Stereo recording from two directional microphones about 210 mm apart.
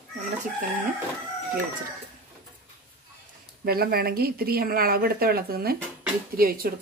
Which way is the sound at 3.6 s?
45° right (ahead or behind).